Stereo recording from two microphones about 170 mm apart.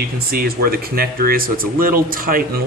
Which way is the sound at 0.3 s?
60° right (ahead or behind).